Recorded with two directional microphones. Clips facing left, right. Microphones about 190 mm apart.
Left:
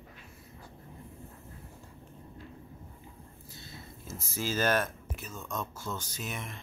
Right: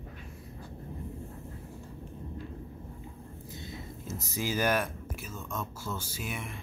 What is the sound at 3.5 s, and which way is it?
Speech, 20° right (ahead or behind).